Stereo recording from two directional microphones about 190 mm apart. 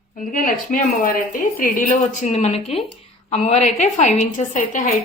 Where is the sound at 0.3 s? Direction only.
45° left (ahead or behind).